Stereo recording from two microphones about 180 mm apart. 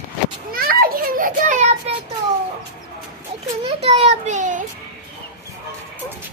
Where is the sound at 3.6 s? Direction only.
35° right (ahead or behind).